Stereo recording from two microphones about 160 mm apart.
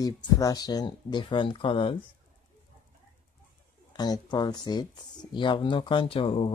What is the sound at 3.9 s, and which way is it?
Speech, 25° left (ahead or behind).